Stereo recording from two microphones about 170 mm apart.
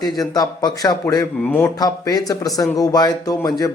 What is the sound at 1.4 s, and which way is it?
Speech, 10° left (ahead or behind).